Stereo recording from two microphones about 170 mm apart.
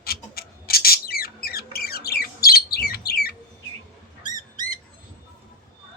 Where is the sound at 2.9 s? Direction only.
65° left (ahead or behind).